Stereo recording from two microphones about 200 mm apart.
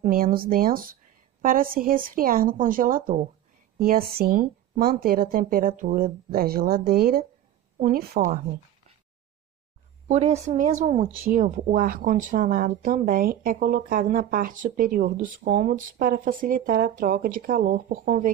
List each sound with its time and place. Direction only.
0.0 s speech: 45° right (ahead or behind)
10.0 s a woman's voice: 35° right (ahead or behind)